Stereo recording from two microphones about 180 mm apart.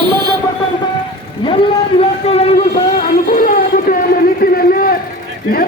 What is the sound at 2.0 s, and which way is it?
Speech, 35° left (ahead or behind).